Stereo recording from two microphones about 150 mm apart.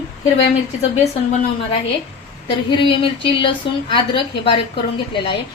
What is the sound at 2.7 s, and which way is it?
A woman's voice, 35° left (ahead or behind).